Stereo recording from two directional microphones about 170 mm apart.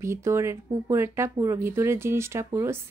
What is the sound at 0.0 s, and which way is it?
Speech, 15° right (ahead or behind).